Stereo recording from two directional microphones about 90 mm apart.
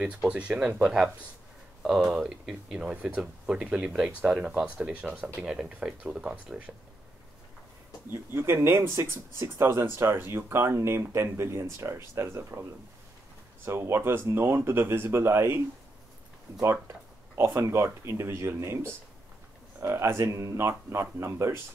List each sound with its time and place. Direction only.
0.0 s speech: 10° right (ahead or behind)
1.8 s speech: 5° right (ahead or behind)
8.1 s speech: 25° right (ahead or behind)
13.7 s speech: 30° right (ahead or behind)
17.4 s speech: 25° right (ahead or behind)